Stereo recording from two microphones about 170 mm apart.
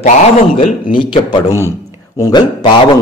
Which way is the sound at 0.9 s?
30° left (ahead or behind).